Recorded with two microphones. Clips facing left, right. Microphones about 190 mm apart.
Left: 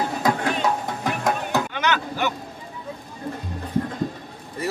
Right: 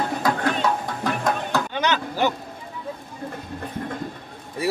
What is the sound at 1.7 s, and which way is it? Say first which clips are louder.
Chop: right 1 dB; 30° right (ahead or behind).